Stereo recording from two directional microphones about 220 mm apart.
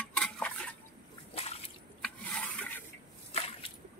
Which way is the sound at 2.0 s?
5° left (ahead or behind).